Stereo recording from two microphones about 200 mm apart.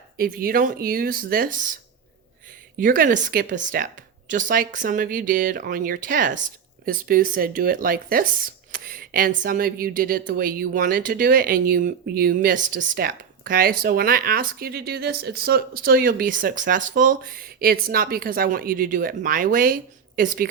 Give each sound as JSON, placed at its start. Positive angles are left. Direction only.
{"t": 0.2, "sound": "speech", "side_deg": -45}
{"t": 2.7, "sound": "speech", "side_deg": -45}